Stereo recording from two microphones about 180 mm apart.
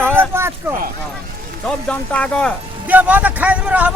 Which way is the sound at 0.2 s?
15° right (ahead or behind).